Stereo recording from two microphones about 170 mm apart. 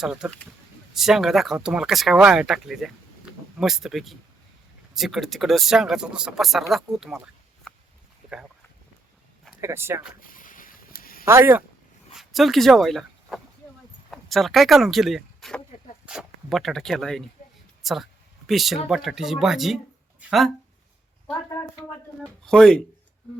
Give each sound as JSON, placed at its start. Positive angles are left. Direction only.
{"t": 0.0, "sound": "speech", "side_deg": -5}
{"t": 7.7, "sound": "a sound", "side_deg": 5}
{"t": 9.6, "sound": "speech", "side_deg": -15}
{"t": 10.2, "sound": "a sound", "side_deg": 55}
{"t": 11.3, "sound": "speech", "side_deg": -15}
{"t": 12.1, "sound": "speech", "side_deg": 0}
{"t": 17.8, "sound": "a sound", "side_deg": 0}
{"t": 18.9, "sound": "speech", "side_deg": 0}
{"t": 22.4, "sound": "speech", "side_deg": 5}